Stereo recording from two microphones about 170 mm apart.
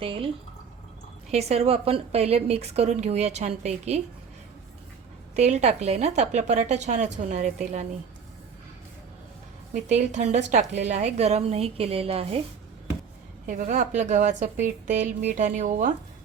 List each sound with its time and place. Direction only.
0.0 s a woman's voice: 30° right (ahead or behind)
1.3 s a woman's voice: 40° right (ahead or behind)
5.4 s a woman's voice: 40° right (ahead or behind)
9.9 s a woman's voice: 45° right (ahead or behind)
13.5 s a woman's voice: 45° right (ahead or behind)